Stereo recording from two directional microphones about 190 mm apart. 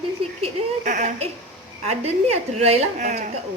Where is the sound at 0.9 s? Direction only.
40° right (ahead or behind).